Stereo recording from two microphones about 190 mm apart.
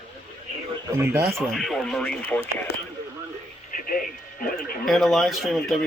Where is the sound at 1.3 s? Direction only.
Centre (ahead or behind).